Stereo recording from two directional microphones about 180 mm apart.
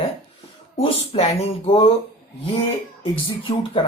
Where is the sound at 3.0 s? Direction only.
30° left (ahead or behind).